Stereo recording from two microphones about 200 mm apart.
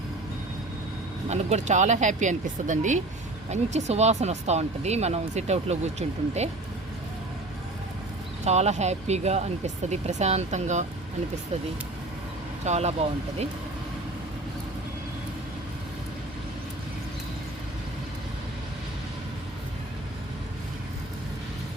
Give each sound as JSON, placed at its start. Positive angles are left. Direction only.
{"t": 1.3, "sound": "speech", "side_deg": -35}
{"t": 8.4, "sound": "speech", "side_deg": -35}
{"t": 12.6, "sound": "speech", "side_deg": -35}